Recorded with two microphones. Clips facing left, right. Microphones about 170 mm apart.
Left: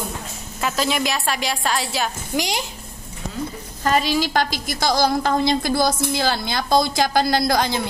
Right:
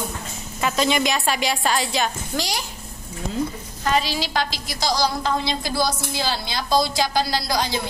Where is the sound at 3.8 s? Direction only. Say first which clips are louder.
Left 3 dB; 45° left (ahead or behind).